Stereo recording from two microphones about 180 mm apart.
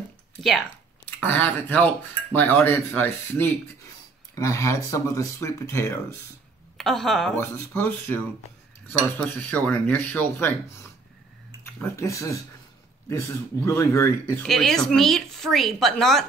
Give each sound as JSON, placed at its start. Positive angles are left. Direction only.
{"t": 0.4, "sound": "speech", "side_deg": 0}
{"t": 6.8, "sound": "speech", "side_deg": 0}
{"t": 11.6, "sound": "speech", "side_deg": 15}
{"t": 14.4, "sound": "speech", "side_deg": 0}